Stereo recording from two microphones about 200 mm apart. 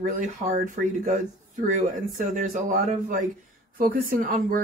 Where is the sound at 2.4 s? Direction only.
40° right (ahead or behind).